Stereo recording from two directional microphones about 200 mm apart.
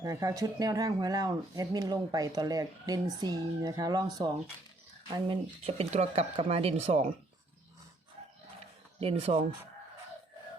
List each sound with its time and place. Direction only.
0.0 s speech: 15° right (ahead or behind)
9.0 s speech: 30° right (ahead or behind)